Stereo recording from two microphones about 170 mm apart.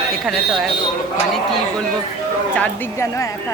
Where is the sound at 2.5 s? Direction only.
10° left (ahead or behind).